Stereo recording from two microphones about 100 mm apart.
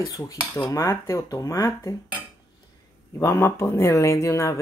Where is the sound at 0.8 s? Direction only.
30° left (ahead or behind).